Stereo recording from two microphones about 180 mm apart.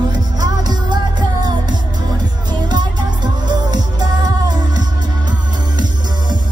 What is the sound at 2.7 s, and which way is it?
Music, 25° right (ahead or behind).